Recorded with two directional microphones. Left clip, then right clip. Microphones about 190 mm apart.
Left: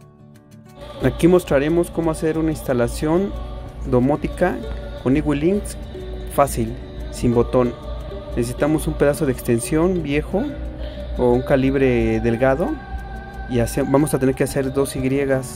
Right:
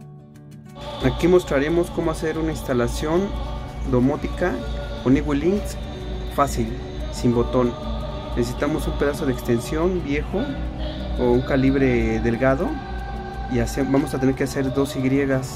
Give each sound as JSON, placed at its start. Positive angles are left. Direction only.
{"t": 1.0, "sound": "a man's voice", "side_deg": 25}
{"t": 11.4, "sound": "speech", "side_deg": 30}